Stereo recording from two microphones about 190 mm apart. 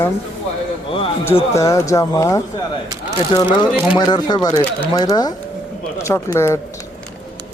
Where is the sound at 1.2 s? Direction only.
15° left (ahead or behind).